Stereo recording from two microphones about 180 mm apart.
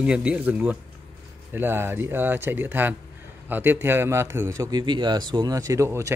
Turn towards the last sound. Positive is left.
turn(degrees=-15)  # may be behind; listen again after turning